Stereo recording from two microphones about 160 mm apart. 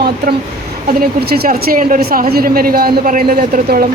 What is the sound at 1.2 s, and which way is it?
A woman's voice, 75° right (ahead or behind).